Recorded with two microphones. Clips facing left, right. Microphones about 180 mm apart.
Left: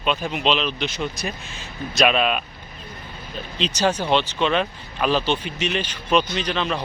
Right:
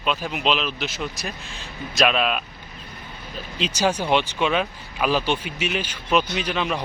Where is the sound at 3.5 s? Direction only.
10° right (ahead or behind).